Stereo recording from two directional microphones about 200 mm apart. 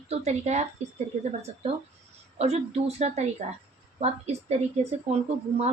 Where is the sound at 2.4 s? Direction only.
30° right (ahead or behind).